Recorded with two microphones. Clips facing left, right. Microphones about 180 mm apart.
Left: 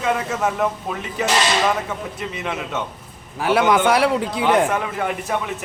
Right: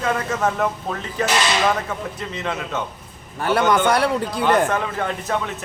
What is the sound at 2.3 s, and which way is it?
A man's voice, 10° left (ahead or behind).